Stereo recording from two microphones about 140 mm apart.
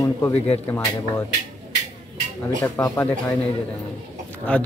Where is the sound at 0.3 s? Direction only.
15° left (ahead or behind).